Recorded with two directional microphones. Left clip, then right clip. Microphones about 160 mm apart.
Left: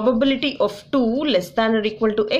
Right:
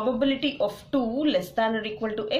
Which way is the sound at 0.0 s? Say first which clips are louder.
Left 6 dB; 45° left (ahead or behind).